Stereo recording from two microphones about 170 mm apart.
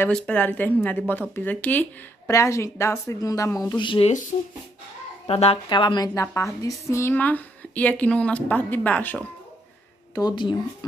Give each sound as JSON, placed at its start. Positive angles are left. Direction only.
{"t": 0.0, "sound": "speech", "side_deg": 10}
{"t": 5.2, "sound": "speech", "side_deg": 35}
{"t": 10.1, "sound": "speech", "side_deg": 25}